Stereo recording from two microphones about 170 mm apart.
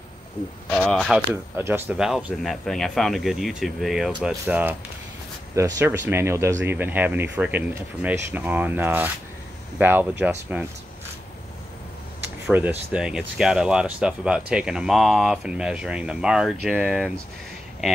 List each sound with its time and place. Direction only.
0.7 s speech: 5° left (ahead or behind)
1.6 s speech: 10° right (ahead or behind)
12.4 s speech: 5° right (ahead or behind)